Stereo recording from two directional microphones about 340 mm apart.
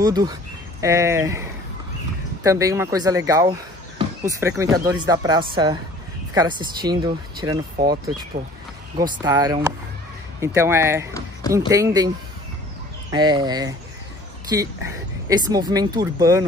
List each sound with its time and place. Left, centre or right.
0.0 s speech: centre
2.4 s speech: centre
7.7 s speech: right
8.9 s speech: centre
13.1 s speech: centre